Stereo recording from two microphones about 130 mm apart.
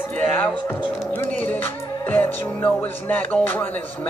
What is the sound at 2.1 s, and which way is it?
Speech, 15° left (ahead or behind).